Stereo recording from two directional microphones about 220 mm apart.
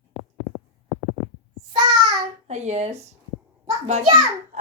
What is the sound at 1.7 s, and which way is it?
Babbling, 25° right (ahead or behind).